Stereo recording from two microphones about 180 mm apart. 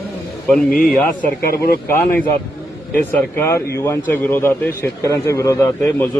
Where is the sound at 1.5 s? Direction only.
55° left (ahead or behind).